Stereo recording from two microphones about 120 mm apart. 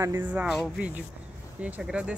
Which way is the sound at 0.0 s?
25° right (ahead or behind).